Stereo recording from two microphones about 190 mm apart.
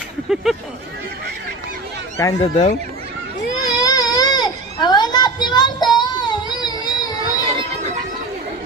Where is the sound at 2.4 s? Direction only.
40° left (ahead or behind).